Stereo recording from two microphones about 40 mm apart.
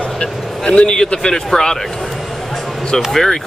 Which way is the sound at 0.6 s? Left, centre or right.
Left.